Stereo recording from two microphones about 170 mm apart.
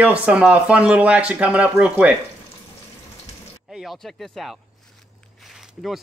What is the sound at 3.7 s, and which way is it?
Speech, centre (ahead or behind).